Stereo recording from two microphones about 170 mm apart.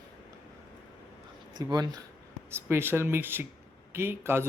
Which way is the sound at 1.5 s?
25° right (ahead or behind).